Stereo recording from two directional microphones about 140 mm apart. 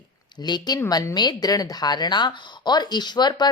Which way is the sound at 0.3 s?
30° left (ahead or behind).